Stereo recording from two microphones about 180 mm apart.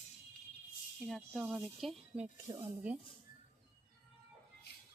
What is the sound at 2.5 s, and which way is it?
Speech, 25° right (ahead or behind).